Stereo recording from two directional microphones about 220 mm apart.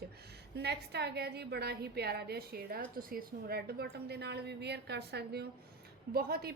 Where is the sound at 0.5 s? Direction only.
50° right (ahead or behind).